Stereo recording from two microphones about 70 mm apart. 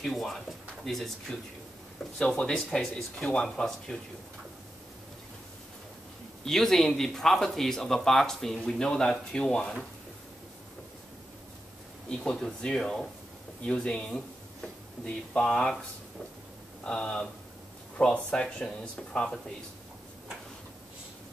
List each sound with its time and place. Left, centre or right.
0.0 s speech: centre
6.4 s speech: centre
12.1 s speech: centre
16.8 s speech: centre